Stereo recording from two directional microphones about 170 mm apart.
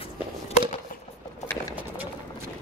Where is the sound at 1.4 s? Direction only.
20° left (ahead or behind).